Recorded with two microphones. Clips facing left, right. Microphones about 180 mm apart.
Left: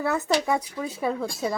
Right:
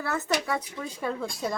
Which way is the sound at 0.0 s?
15° left (ahead or behind).